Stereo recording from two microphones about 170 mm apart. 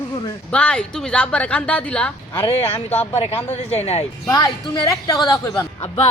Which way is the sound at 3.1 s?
35° left (ahead or behind).